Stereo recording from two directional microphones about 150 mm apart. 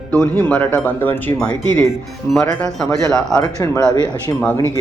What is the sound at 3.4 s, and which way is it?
Speech, 20° left (ahead or behind).